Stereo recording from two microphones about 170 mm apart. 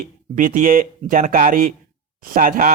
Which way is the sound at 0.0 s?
55° right (ahead or behind).